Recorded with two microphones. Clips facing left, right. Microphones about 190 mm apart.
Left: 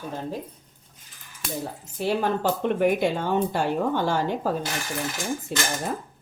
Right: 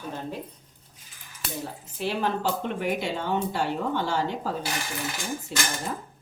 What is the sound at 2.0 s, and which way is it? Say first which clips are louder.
A woman's voice: left 3 dB; 50° left (ahead or behind).